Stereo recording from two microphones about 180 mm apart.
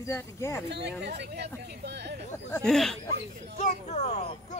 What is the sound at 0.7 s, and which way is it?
Speech, 70° right (ahead or behind).